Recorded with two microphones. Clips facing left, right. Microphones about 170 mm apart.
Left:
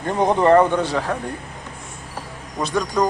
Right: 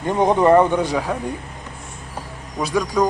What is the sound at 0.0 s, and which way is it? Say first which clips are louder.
Speech: right 1 dB; 15° right (ahead or behind).